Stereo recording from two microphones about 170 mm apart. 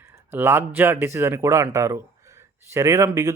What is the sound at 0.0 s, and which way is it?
A man's voice, 15° right (ahead or behind).